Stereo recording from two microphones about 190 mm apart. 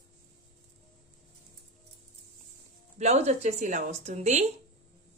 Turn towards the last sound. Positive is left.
turn(degrees=-35)  # may be behind; listen again after turning